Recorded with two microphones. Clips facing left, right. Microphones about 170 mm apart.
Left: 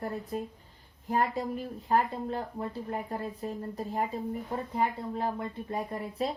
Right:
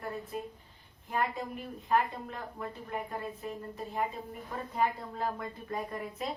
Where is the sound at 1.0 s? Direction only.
35° left (ahead or behind).